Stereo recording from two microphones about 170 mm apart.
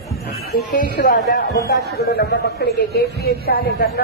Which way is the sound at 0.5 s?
55° left (ahead or behind).